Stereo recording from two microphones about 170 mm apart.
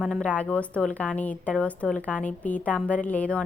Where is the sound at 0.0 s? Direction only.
5° left (ahead or behind).